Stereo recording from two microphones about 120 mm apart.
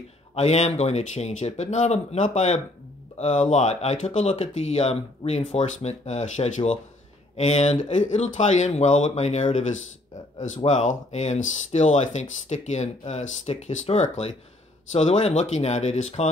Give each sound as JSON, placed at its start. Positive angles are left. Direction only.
{"t": 0.3, "sound": "speech", "side_deg": 65}